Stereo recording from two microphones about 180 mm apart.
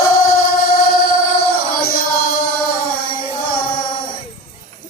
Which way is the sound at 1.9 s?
55° left (ahead or behind).